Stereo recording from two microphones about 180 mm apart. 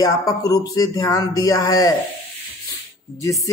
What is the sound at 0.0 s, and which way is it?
Speech, 20° left (ahead or behind).